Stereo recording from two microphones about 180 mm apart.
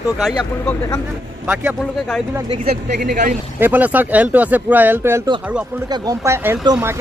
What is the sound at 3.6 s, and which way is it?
Speech, 10° right (ahead or behind).